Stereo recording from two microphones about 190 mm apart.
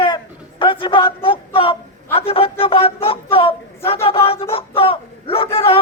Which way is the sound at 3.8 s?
30° left (ahead or behind).